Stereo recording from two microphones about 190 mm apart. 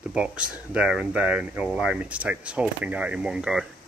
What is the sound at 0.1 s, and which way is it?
Speech, 5° right (ahead or behind).